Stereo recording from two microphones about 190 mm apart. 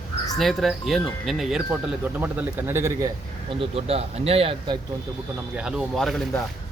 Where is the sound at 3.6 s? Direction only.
30° right (ahead or behind).